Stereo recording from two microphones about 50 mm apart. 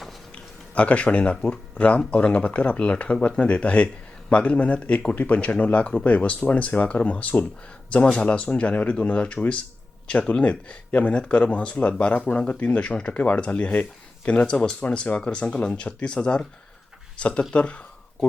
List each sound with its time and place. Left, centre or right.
0.7 s speech: left
8.0 s speech: centre
8.4 s speech: left
17.5 s a sound: left